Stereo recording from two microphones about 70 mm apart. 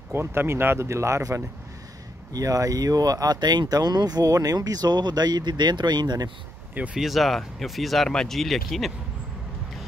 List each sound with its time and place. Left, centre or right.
0.1 s speech: right
6.7 s speech: right
7.0 s speech: centre